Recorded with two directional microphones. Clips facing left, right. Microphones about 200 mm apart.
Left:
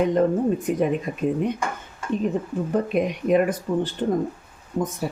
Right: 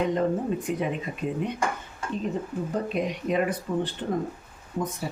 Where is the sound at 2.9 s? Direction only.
55° left (ahead or behind).